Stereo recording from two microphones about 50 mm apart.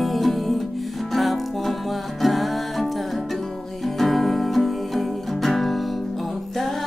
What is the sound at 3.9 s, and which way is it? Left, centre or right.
Music, centre.